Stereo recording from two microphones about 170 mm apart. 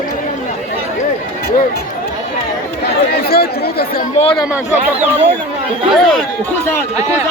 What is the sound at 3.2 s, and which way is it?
Speech, 65° left (ahead or behind).